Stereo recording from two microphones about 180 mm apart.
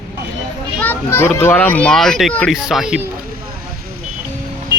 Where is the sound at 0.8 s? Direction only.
10° left (ahead or behind); by 3.1 s 5° right (ahead or behind).